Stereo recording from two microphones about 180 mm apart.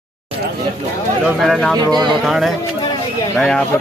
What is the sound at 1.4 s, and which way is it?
Speech, centre (ahead or behind).